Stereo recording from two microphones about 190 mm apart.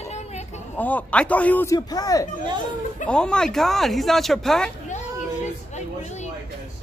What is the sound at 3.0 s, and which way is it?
Speech, 5° left (ahead or behind).